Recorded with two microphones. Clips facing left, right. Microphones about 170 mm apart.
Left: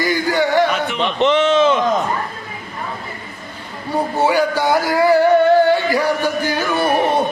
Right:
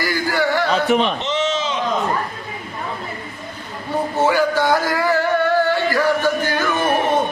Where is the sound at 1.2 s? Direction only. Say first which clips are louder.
Left 8 dB; 60° left (ahead or behind).